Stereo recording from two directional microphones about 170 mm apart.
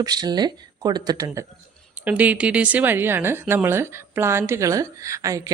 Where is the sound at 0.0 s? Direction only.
25° right (ahead or behind).